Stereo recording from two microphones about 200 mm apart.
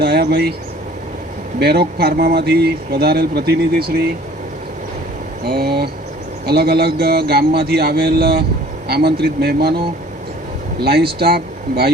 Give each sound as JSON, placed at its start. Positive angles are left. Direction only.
{"t": 0.0, "sound": "speech", "side_deg": -50}
{"t": 1.5, "sound": "speech", "side_deg": -55}
{"t": 5.5, "sound": "speech", "side_deg": -50}
{"t": 10.8, "sound": "speech", "side_deg": -50}